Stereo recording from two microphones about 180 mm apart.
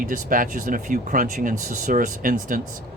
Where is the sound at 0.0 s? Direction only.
50° right (ahead or behind).